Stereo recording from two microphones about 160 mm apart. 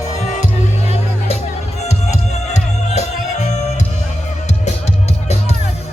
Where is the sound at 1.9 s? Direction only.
45° left (ahead or behind).